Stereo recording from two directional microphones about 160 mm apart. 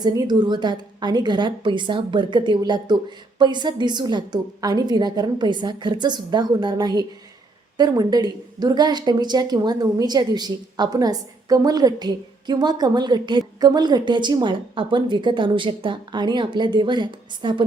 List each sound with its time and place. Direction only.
0.0 s a woman's voice: 25° right (ahead or behind)